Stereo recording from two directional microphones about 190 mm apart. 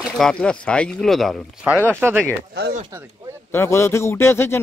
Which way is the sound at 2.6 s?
55° right (ahead or behind).